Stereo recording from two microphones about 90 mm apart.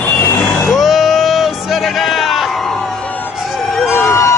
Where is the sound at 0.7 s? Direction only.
Centre (ahead or behind).